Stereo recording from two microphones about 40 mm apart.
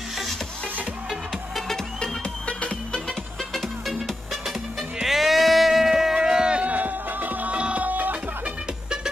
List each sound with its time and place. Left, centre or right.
2.4 s music: left
5.0 s a sound: centre
6.5 s music: right
7.5 s music: right